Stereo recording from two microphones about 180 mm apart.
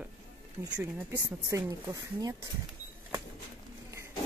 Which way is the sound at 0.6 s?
15° right (ahead or behind).